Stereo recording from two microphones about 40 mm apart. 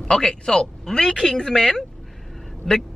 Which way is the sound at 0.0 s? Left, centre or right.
Centre.